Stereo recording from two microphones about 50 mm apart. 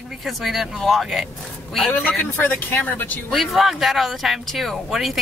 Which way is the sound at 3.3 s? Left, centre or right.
Centre.